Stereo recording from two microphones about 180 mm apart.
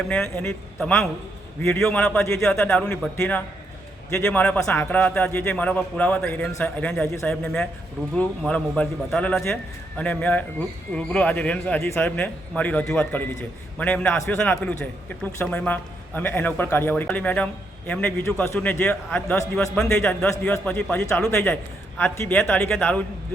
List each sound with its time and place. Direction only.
0.1 s a man's voice: 5° left (ahead or behind)